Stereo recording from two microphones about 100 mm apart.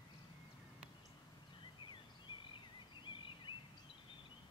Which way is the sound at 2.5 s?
55° left (ahead or behind).